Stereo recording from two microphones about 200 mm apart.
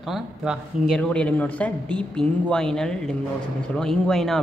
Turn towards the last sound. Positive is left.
turn(degrees=0)  # may be behind; listen again after turning